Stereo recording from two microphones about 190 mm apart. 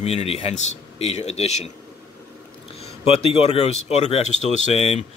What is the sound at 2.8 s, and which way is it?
Speech, 35° left (ahead or behind).